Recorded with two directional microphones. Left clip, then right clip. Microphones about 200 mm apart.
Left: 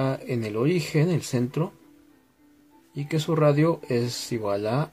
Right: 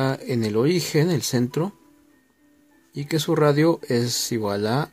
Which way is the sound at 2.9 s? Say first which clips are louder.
Right 4 dB; 40° right (ahead or behind).